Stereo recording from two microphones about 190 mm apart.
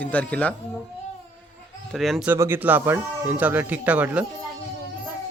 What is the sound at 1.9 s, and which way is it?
Speech, centre (ahead or behind).